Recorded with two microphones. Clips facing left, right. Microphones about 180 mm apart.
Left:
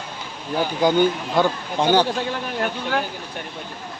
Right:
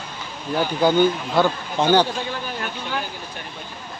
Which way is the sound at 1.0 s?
15° left (ahead or behind).